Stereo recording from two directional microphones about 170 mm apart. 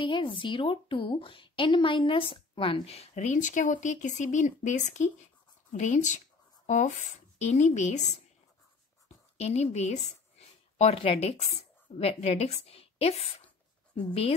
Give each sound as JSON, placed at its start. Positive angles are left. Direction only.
{"t": 0.0, "sound": "a woman's voice", "side_deg": 30}
{"t": 9.4, "sound": "a woman's voice", "side_deg": 40}